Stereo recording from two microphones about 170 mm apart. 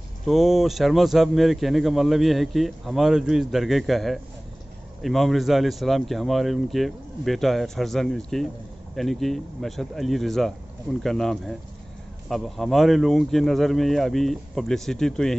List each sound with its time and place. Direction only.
0.3 s a man's voice: centre (ahead or behind)